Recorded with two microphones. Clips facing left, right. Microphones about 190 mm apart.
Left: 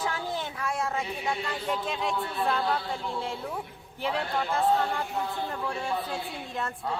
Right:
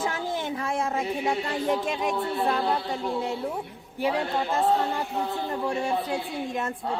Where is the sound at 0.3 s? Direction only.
20° right (ahead or behind).